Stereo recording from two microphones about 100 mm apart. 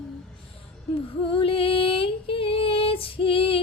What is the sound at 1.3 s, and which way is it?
Female singing, 65° left (ahead or behind).